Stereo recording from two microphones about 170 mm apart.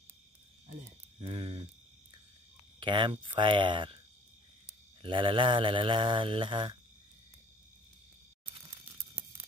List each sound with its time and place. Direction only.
1.2 s mantra: 30° right (ahead or behind)
2.8 s mantra: 30° right (ahead or behind)